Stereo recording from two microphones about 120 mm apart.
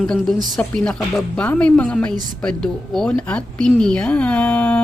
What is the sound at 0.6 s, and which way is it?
A man's voice, 5° left (ahead or behind).